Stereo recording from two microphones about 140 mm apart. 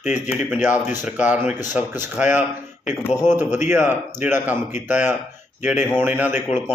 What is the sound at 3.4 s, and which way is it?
Speech, 55° left (ahead or behind).